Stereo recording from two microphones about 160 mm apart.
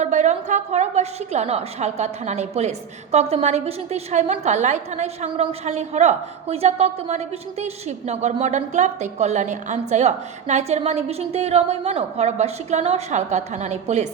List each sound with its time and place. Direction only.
0.0 s a woman's voice: 45° right (ahead or behind)